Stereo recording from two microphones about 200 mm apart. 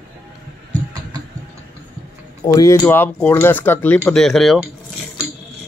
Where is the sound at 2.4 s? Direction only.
15° left (ahead or behind); by 4.6 s centre (ahead or behind).